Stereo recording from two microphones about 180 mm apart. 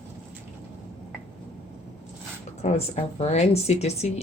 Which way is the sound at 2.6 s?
35° left (ahead or behind).